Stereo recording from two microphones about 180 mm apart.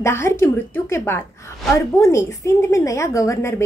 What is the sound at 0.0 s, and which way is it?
A woman's voice, 15° left (ahead or behind).